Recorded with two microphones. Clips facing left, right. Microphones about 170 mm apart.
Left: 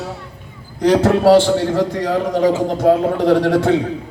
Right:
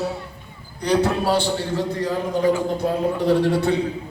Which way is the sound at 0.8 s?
90° left.